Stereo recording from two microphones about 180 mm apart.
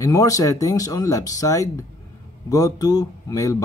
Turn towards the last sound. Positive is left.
turn(degrees=20)  # may be behind; listen again after turning